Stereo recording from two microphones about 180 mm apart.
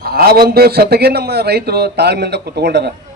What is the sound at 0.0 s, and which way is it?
A man's voice, 60° right (ahead or behind).